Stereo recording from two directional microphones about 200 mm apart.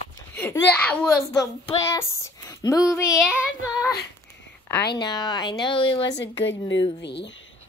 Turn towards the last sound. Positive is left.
turn(degrees=60)  # may be behind; listen again after turning